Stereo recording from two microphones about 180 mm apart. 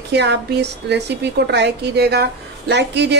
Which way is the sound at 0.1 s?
70° right (ahead or behind).